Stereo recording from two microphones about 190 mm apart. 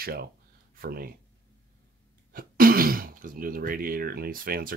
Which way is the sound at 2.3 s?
50° right (ahead or behind).